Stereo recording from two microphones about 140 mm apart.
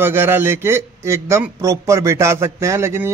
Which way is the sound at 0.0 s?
15° right (ahead or behind).